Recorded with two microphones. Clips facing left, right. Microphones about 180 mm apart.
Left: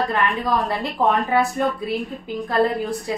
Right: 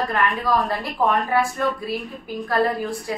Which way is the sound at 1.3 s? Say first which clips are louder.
Left 2 dB; 20° left (ahead or behind).